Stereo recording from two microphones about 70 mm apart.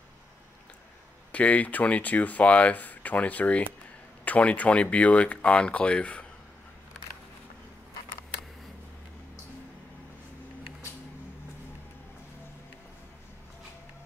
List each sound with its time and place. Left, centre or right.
1.3 s speech: left